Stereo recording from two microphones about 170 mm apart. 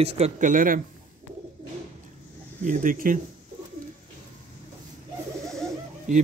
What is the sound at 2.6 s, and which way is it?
Speech, 50° right (ahead or behind).